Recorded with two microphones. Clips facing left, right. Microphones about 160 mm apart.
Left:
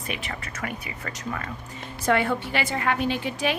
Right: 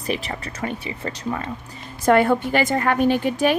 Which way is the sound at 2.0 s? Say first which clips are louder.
Right 7 dB; 45° right (ahead or behind).